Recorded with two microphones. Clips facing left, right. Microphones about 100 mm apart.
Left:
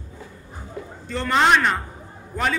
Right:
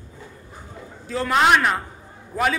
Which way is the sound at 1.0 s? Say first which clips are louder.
Right 1 dB; 5° right (ahead or behind).